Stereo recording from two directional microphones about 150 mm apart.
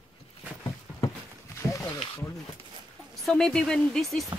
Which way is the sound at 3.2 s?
5° left (ahead or behind).